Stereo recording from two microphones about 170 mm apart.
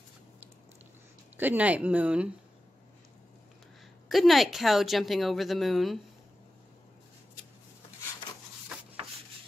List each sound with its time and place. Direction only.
1.3 s speech: 10° right (ahead or behind)
4.1 s a woman's voice: centre (ahead or behind)